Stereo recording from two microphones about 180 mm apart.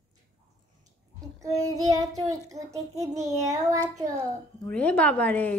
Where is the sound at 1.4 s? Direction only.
20° right (ahead or behind).